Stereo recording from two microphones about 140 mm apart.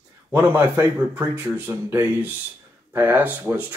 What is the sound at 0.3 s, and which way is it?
Speech, 15° right (ahead or behind).